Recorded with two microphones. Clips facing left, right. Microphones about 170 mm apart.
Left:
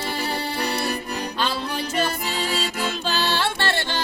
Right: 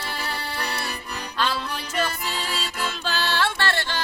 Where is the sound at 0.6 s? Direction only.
40° left (ahead or behind).